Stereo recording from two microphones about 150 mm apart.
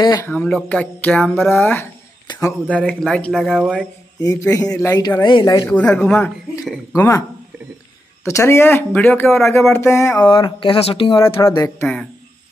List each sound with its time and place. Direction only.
0.1 s speech: 10° left (ahead or behind)
1.6 s speech: 15° left (ahead or behind); by 3.8 s 5° right (ahead or behind)
4.4 s speech: 25° left (ahead or behind)
5.7 s speech: 5° left (ahead or behind)
6.6 s speech: 5° right (ahead or behind)
7.0 s speech: 20° left (ahead or behind)
10.3 s speech: 35° left (ahead or behind)
11.4 s speech: 20° left (ahead or behind)